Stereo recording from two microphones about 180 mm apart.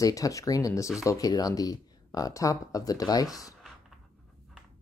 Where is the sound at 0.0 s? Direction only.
20° left (ahead or behind).